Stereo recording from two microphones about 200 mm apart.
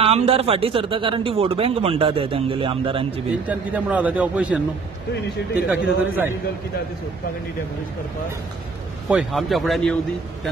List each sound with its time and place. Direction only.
0.0 s speech: 30° right (ahead or behind)
3.4 s a man's voice: 5° right (ahead or behind)
5.7 s a man's voice: 10° right (ahead or behind)
9.1 s a man's voice: centre (ahead or behind)